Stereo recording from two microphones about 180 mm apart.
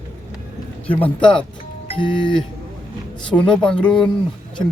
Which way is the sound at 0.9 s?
10° left (ahead or behind).